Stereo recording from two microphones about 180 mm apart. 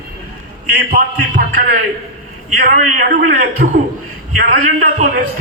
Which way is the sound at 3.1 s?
50° right (ahead or behind).